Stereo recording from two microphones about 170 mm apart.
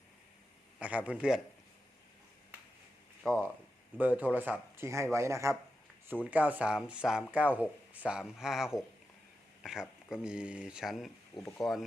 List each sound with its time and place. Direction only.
0.8 s speech: 10° right (ahead or behind)
3.9 s speech: 10° right (ahead or behind)